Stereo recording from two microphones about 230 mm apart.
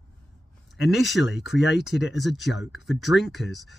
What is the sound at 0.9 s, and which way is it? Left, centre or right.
Speech, centre.